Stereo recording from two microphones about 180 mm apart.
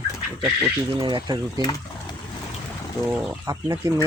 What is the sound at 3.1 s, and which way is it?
Speech, 15° right (ahead or behind).